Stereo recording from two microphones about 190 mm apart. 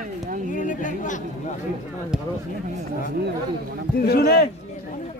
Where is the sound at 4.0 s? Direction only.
55° left (ahead or behind).